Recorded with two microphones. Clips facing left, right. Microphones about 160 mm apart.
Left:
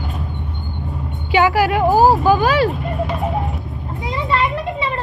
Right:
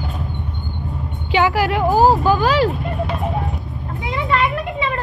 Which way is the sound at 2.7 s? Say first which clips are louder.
Left 1 dB; centre (ahead or behind).